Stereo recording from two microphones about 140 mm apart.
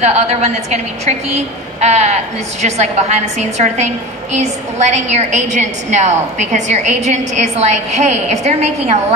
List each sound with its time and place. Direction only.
0.0 s a woman's voice: 50° right (ahead or behind)